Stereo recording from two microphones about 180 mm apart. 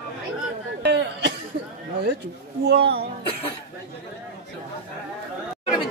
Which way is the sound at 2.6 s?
65° right (ahead or behind).